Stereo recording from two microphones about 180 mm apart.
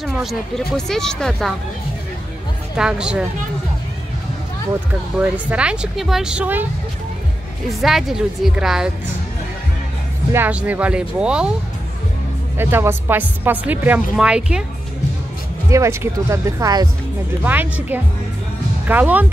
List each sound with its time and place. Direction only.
0.0 s speech: centre (ahead or behind)
2.7 s speech: 5° right (ahead or behind)
5.5 s speech: 5° right (ahead or behind)
7.8 s speech: centre (ahead or behind)
10.3 s a woman's voice: 10° right (ahead or behind)
12.5 s a woman's voice: 15° right (ahead or behind)
15.7 s a woman's voice: 15° right (ahead or behind)